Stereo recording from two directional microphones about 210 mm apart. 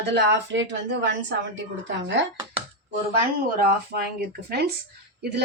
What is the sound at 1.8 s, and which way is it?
Speech, 60° right (ahead or behind).